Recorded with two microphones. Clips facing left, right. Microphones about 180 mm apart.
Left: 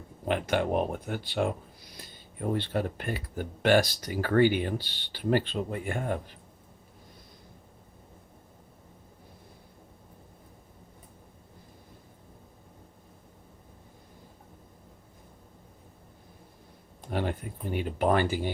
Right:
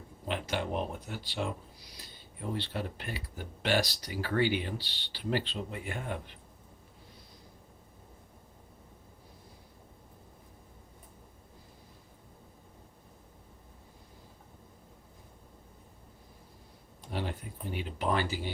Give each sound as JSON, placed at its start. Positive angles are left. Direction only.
{"t": 0.3, "sound": "speech", "side_deg": 55}
{"t": 17.1, "sound": "speech", "side_deg": 55}